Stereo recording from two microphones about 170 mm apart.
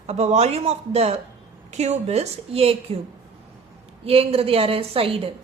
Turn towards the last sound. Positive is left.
turn(degrees=-30)  # may be behind; listen again after turning